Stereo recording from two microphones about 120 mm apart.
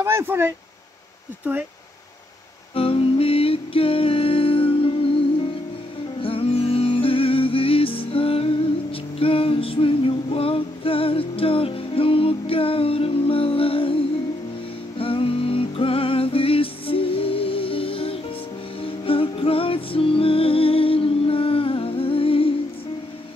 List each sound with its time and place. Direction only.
0.0 s speech: 20° right (ahead or behind)
2.7 s music: 50° left (ahead or behind)
9.2 s female singing: 50° left (ahead or behind)
15.0 s music: 50° left (ahead or behind)